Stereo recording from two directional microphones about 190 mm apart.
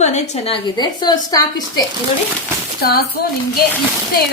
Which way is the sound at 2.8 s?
55° left (ahead or behind).